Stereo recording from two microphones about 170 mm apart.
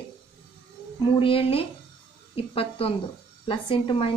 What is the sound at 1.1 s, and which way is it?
A woman's voice, 30° left (ahead or behind).